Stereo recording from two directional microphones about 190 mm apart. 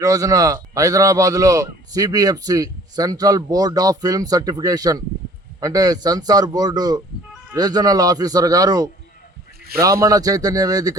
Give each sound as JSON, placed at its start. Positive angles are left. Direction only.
{"t": 0.0, "sound": "a man's voice", "side_deg": -15}